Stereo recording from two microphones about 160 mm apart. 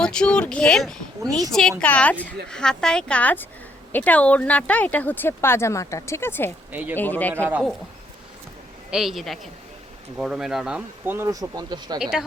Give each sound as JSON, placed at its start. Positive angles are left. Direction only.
{"t": 0.0, "sound": "speech", "side_deg": 5}
{"t": 6.7, "sound": "speech", "side_deg": -10}
{"t": 6.9, "sound": "speech", "side_deg": 10}
{"t": 7.3, "sound": "speech", "side_deg": -15}
{"t": 8.9, "sound": "speech", "side_deg": 0}
{"t": 11.9, "sound": "speech", "side_deg": -5}